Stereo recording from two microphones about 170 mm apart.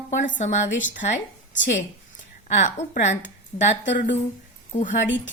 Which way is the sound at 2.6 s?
45° left (ahead or behind).